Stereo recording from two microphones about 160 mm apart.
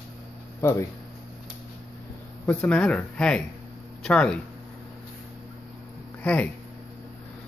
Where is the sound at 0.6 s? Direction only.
20° left (ahead or behind).